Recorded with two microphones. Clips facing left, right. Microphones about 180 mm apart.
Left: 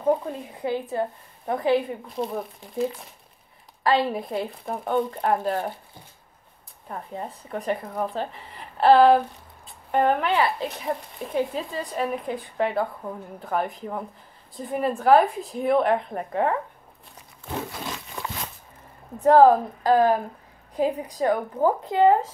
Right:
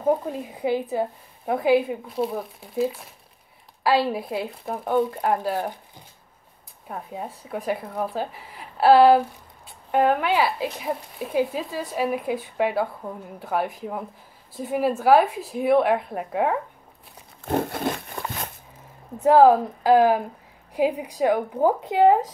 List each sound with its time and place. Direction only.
0.6 s speech: 10° right (ahead or behind)
6.9 s speech: 5° right (ahead or behind)
17.5 s a sound: 55° right (ahead or behind)
19.2 s speech: 5° right (ahead or behind)